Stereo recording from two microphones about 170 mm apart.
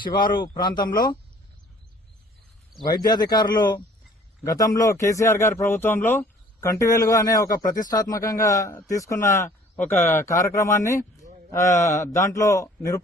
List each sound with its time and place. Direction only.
0.0 s speech: 25° left (ahead or behind)
2.8 s a man's voice: 25° left (ahead or behind)